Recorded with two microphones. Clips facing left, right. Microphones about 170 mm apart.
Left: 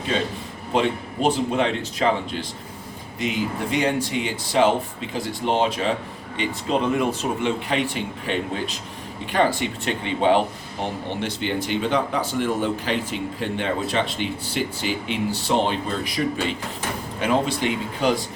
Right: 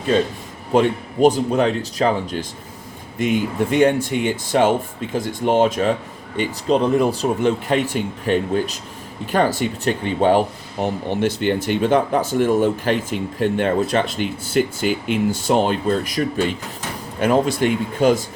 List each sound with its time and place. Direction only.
0.7 s speech: 45° right (ahead or behind)